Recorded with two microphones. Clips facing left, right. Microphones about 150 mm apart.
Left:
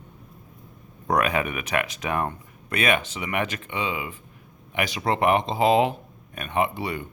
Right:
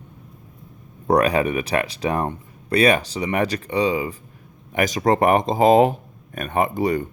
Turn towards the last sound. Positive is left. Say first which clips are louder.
# right 5 dB
turn(degrees=-45)  # may be behind; listen again after turning